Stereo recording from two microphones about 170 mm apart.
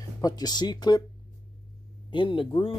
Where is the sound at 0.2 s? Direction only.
25° left (ahead or behind).